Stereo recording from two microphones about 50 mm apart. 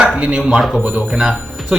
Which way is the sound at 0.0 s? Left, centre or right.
Right.